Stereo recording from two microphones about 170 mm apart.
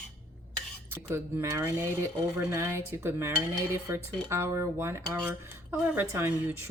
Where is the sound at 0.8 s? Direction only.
15° right (ahead or behind).